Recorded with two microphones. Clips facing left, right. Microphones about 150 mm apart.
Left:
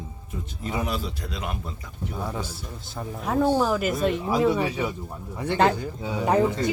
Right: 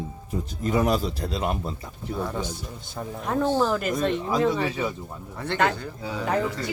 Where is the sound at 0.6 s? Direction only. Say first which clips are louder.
Right 6 dB; 45° right (ahead or behind).